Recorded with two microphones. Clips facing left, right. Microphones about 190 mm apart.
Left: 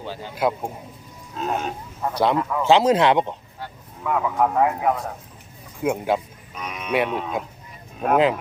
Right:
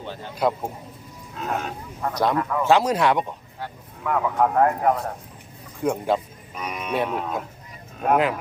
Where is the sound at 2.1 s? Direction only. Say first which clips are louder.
Left 2 dB; 30° left (ahead or behind).